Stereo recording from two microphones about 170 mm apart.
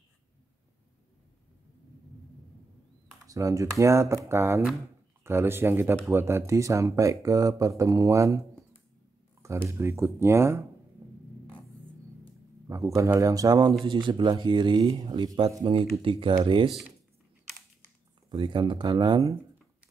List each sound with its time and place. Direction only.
3.3 s speech: 20° right (ahead or behind)
9.4 s speech: 15° right (ahead or behind)
11.0 s music: 20° right (ahead or behind)
12.6 s speech: 20° right (ahead or behind)
18.3 s speech: 25° right (ahead or behind)